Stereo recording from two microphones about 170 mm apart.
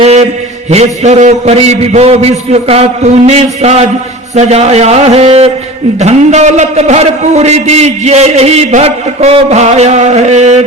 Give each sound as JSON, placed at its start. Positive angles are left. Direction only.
{"t": 0.0, "sound": "a man's voice", "side_deg": -40}